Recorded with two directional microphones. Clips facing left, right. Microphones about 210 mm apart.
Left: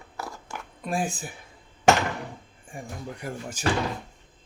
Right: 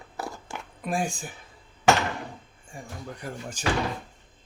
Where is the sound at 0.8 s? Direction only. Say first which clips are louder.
Even; 5° left (ahead or behind).